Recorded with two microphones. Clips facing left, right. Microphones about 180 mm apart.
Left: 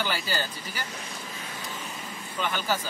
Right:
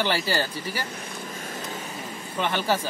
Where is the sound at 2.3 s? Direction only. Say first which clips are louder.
Right 4 dB; 25° right (ahead or behind).